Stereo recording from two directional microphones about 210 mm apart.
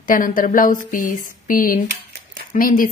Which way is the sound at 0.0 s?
40° left (ahead or behind).